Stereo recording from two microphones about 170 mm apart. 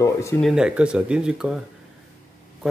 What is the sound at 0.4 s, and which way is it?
Speech, 5° right (ahead or behind).